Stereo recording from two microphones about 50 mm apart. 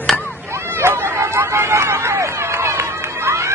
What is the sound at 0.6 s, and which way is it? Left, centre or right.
Hubbub, right.